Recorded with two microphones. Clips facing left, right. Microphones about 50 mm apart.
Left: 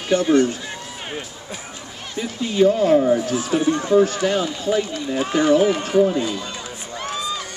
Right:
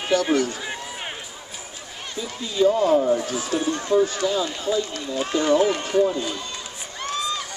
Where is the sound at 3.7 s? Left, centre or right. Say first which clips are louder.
Left 4 dB; centre.